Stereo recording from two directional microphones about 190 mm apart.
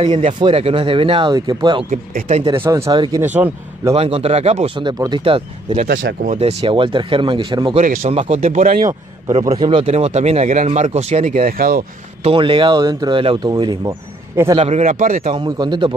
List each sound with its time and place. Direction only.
0.0 s speech: 30° right (ahead or behind)
1.9 s speech: 40° right (ahead or behind)
2.6 s speech: 15° right (ahead or behind)
3.9 s speech: 30° right (ahead or behind)
7.8 s a man's voice: 45° right (ahead or behind)
8.1 s speech: 30° right (ahead or behind)
8.4 s a man's voice: 45° right (ahead or behind)
9.6 s speech: 25° right (ahead or behind); by 11.8 s 50° right (ahead or behind)
12.2 s speech: 30° right (ahead or behind)
14.5 s speech: 35° right (ahead or behind)
15.3 s speech: 25° right (ahead or behind)